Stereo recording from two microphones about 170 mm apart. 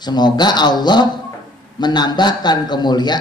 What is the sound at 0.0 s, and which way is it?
A man's voice, 25° left (ahead or behind).